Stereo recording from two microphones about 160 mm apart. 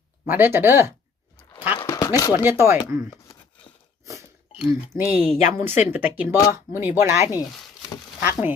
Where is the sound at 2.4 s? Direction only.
15° right (ahead or behind).